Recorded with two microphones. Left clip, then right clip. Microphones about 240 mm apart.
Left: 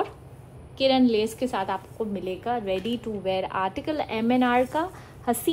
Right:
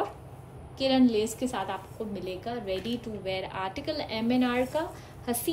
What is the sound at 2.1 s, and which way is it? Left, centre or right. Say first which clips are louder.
A woman's voice: left 7 dB; centre.